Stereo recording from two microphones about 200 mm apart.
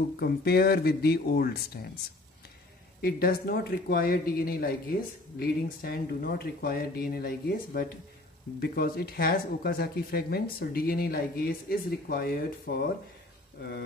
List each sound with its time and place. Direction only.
0.2 s speech: 50° left (ahead or behind)
3.0 s speech: 50° left (ahead or behind)